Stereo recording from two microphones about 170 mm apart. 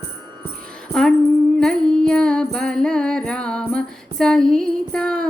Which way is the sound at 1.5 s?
5° left (ahead or behind).